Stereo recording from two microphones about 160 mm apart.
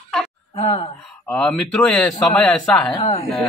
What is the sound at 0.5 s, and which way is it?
Music, 35° left (ahead or behind).